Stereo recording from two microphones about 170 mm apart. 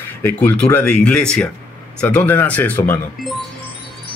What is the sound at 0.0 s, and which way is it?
Speech, 10° left (ahead or behind).